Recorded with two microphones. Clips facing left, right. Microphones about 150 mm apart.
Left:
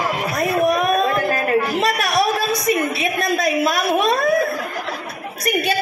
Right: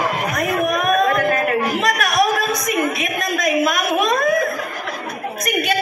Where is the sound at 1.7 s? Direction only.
30° left (ahead or behind).